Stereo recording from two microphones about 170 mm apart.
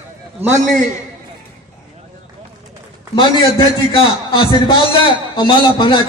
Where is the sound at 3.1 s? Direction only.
25° left (ahead or behind).